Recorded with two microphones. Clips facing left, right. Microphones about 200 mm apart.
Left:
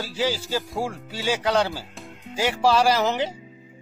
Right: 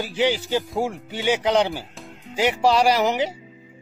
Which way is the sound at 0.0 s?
20° right (ahead or behind).